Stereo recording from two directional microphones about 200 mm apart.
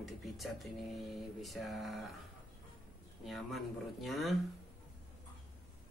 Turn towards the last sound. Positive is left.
turn(degrees=0)  # may be behind; listen again after turning